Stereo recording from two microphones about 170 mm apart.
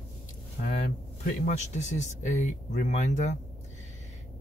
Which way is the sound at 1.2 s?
45° left (ahead or behind).